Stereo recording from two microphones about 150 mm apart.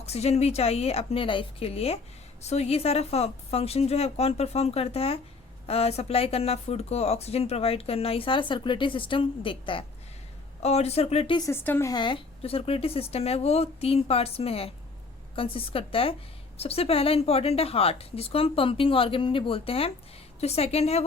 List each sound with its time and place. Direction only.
0.0 s a woman's voice: 45° left (ahead or behind)
11.3 s speech: 20° left (ahead or behind)
11.9 s a woman's voice: 30° left (ahead or behind)